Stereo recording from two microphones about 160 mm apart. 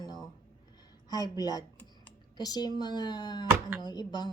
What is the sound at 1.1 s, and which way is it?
Speech, 25° left (ahead or behind).